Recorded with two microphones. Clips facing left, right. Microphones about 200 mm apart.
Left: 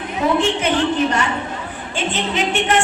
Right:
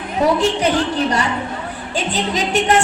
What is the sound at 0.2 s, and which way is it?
Speech, 40° right (ahead or behind).